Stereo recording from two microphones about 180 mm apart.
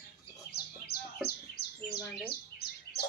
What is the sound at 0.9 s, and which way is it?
Bird, 60° left (ahead or behind).